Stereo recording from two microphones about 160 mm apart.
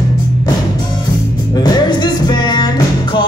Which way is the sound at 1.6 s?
25° left (ahead or behind).